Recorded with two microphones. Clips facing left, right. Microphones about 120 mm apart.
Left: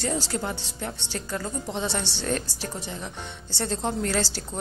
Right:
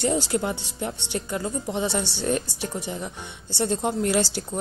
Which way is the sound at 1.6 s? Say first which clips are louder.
Right 4 dB; 5° right (ahead or behind).